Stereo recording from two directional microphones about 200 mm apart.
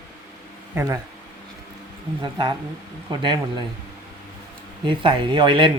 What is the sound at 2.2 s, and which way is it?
Speech, 20° right (ahead or behind).